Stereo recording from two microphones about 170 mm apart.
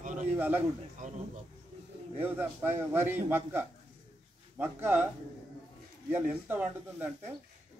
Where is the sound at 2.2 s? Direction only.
15° right (ahead or behind).